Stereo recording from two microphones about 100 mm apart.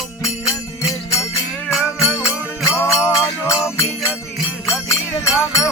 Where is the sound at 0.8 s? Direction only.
35° left (ahead or behind).